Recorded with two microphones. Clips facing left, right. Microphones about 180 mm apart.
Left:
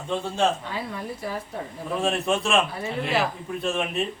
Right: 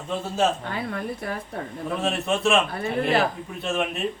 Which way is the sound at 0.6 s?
55° right (ahead or behind).